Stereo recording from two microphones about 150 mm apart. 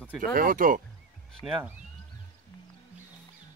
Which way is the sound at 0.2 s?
70° right (ahead or behind).